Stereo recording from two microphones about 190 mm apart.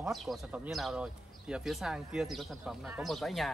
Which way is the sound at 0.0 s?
Centre (ahead or behind).